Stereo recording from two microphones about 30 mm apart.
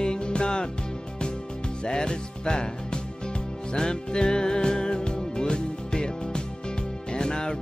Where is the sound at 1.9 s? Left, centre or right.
Left.